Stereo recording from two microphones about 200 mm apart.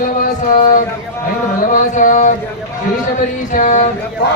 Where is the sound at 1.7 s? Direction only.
40° left (ahead or behind).